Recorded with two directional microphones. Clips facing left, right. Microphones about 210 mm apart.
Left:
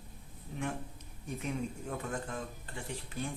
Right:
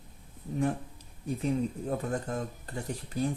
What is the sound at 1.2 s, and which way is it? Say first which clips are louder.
Speech: right 7 dB; 35° right (ahead or behind).